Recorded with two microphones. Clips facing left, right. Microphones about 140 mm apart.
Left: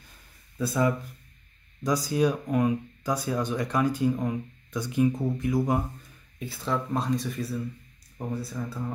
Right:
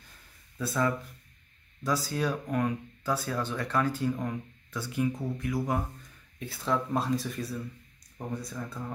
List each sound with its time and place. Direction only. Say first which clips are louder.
0.6 s speech: left 3 dB; 15° left (ahead or behind)
6.4 s speech: even; centre (ahead or behind)